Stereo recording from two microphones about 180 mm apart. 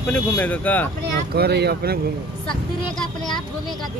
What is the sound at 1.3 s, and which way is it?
Speech, 65° right (ahead or behind).